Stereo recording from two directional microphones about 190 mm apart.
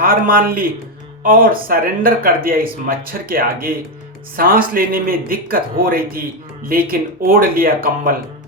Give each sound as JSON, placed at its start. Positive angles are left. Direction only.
{"t": 0.0, "sound": "speech", "side_deg": -50}